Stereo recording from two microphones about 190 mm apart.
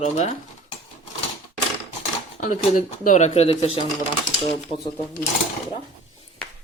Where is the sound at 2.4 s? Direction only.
45° left (ahead or behind).